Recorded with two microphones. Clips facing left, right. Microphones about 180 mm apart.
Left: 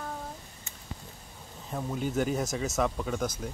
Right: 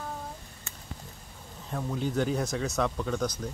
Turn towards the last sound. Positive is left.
turn(degrees=5)  # may be behind; listen again after turning